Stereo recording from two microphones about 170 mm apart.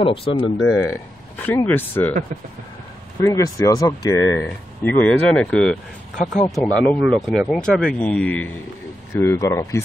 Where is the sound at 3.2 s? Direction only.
20° left (ahead or behind).